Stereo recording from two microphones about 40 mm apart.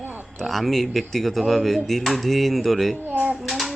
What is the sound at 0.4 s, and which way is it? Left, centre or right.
Speech, centre.